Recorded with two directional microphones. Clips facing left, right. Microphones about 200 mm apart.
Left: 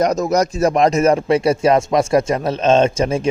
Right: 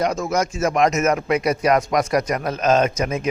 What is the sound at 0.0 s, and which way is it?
Speech, 40° left (ahead or behind).